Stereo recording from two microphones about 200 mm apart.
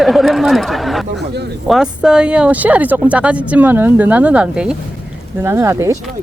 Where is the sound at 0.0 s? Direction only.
Centre (ahead or behind).